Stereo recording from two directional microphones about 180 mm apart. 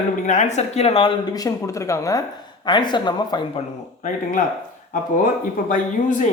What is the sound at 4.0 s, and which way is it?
Speech, 45° left (ahead or behind).